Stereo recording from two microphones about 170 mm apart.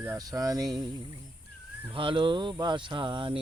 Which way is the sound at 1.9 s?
30° right (ahead or behind).